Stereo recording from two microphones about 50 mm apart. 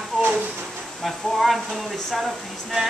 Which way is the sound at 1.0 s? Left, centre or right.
Centre.